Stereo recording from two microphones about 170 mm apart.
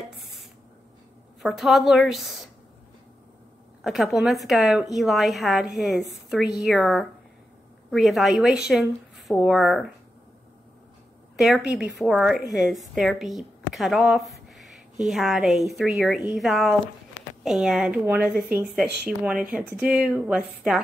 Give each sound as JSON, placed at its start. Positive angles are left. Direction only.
{"t": 0.2, "sound": "dishes", "side_deg": 0}
{"t": 1.4, "sound": "a woman's voice", "side_deg": 0}
{"t": 3.8, "sound": "a woman's voice", "side_deg": 0}
{"t": 11.3, "sound": "a woman's voice", "side_deg": 0}